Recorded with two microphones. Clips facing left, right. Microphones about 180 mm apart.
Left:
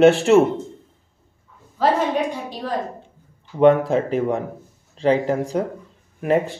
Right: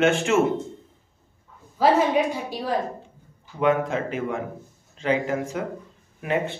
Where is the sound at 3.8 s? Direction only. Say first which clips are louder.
Left 6 dB; 35° left (ahead or behind).